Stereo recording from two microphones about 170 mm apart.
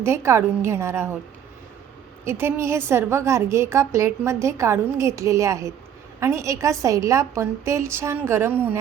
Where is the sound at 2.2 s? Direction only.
15° right (ahead or behind).